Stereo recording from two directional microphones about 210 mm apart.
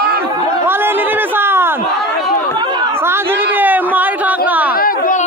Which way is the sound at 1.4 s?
10° right (ahead or behind).